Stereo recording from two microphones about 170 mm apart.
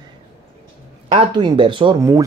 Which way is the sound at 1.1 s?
35° right (ahead or behind).